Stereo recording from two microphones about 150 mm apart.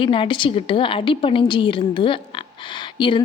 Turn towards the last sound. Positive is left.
turn(degrees=35)  # may be behind; listen again after turning